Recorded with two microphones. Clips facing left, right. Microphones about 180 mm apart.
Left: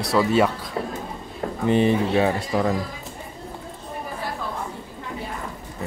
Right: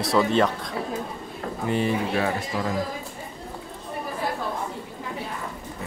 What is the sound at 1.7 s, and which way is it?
Speech, 20° left (ahead or behind).